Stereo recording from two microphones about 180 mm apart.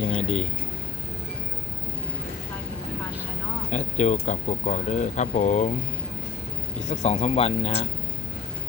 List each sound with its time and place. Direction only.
0.0 s speech: 35° left (ahead or behind)
3.7 s speech: 40° left (ahead or behind)
6.9 s speech: 40° left (ahead or behind)